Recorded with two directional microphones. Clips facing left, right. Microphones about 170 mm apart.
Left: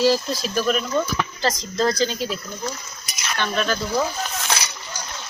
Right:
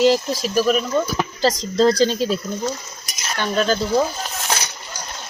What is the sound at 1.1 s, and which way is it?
Speech, 30° right (ahead or behind).